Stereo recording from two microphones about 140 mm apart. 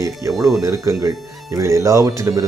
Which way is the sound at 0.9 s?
25° right (ahead or behind).